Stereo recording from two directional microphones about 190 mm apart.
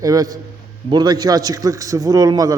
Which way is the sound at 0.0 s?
20° right (ahead or behind).